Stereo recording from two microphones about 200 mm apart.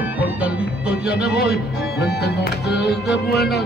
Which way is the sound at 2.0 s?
55° left (ahead or behind).